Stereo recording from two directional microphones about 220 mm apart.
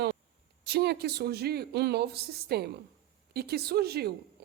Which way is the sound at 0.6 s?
45° right (ahead or behind).